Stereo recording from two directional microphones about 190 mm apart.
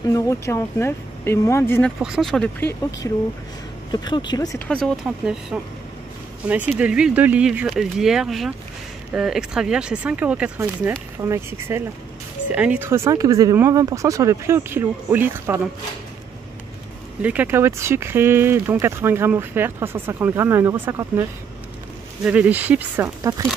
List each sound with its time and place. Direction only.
0.1 s speech: 15° left (ahead or behind)
2.0 s speech: 5° right (ahead or behind)
3.0 s speech: 15° left (ahead or behind)
4.6 s speech: 5° left (ahead or behind)
17.2 s speech: 10° right (ahead or behind)